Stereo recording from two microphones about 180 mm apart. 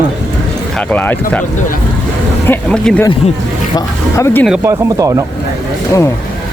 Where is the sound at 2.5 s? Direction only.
5° left (ahead or behind).